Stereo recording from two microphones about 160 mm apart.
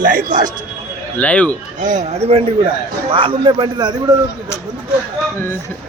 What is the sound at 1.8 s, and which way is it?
A man's voice, 50° right (ahead or behind).